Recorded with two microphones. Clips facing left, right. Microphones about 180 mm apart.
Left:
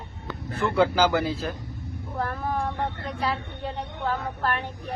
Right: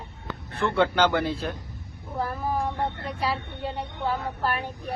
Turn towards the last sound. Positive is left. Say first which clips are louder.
# even
turn(degrees=-10)  # may be behind; listen again after turning